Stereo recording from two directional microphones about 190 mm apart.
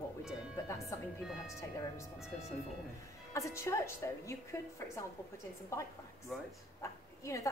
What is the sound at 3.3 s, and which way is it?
A woman's voice, 15° left (ahead or behind).